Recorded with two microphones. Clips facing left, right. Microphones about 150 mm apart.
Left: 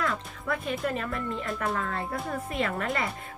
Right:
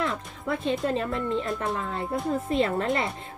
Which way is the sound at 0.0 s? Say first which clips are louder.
Right 2 dB; 25° right (ahead or behind).